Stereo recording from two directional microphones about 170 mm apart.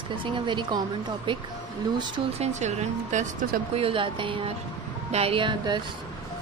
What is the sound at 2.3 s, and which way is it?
Speech, 40° right (ahead or behind).